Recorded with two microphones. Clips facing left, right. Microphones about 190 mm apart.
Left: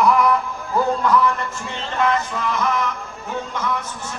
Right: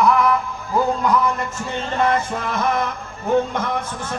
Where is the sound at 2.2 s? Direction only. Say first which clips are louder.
Right 1 dB; 55° right (ahead or behind).